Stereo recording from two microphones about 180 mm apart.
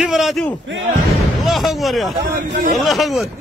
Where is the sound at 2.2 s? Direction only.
45° right (ahead or behind).